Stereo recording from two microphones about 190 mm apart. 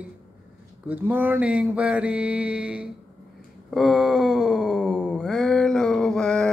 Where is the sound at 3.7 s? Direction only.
Centre (ahead or behind).